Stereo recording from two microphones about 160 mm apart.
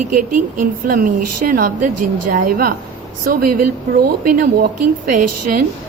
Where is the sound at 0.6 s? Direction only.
60° right (ahead or behind).